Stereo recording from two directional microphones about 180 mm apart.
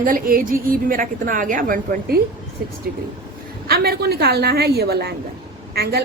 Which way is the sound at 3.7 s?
60° right (ahead or behind).